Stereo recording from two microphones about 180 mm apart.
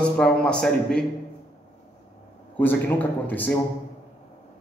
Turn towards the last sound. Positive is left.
turn(degrees=10)  # may be behind; listen again after turning